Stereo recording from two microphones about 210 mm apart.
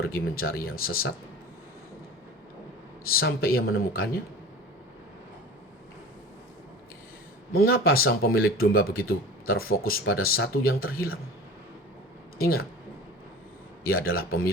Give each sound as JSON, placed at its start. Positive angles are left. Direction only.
{"t": 0.0, "sound": "speech", "side_deg": 45}
{"t": 3.1, "sound": "speech", "side_deg": 45}
{"t": 7.6, "sound": "speech", "side_deg": 45}
{"t": 12.4, "sound": "speech", "side_deg": 45}
{"t": 13.8, "sound": "speech", "side_deg": 45}